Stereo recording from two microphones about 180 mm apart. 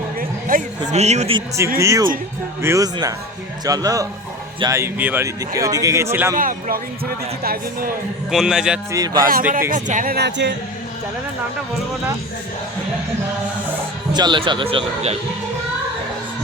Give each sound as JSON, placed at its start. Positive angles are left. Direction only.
{"t": 0.2, "sound": "a sound", "side_deg": -50}
{"t": 0.9, "sound": "speech", "side_deg": -40}
{"t": 1.8, "sound": "speech", "side_deg": -15}
{"t": 6.3, "sound": "speech", "side_deg": -50}
{"t": 8.3, "sound": "a man's voice", "side_deg": -5}
{"t": 9.1, "sound": "speech", "side_deg": -50}
{"t": 14.1, "sound": "speech", "side_deg": -25}